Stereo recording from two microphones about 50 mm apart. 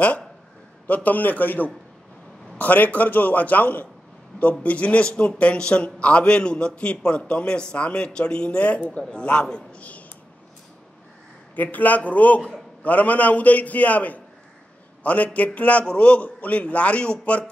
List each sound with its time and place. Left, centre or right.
0.8 s a man's voice: left
11.5 s a man's voice: left